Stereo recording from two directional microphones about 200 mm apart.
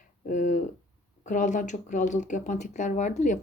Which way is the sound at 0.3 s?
40° left (ahead or behind).